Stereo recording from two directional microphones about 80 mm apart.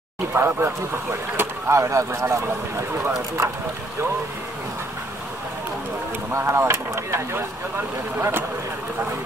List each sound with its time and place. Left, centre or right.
0.3 s speech: right
1.8 s speech: right
6.3 s speech: right